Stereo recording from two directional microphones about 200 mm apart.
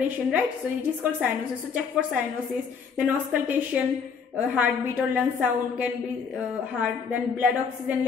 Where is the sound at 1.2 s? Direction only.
5° right (ahead or behind).